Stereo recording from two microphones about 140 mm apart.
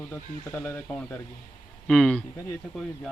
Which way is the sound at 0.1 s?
15° left (ahead or behind).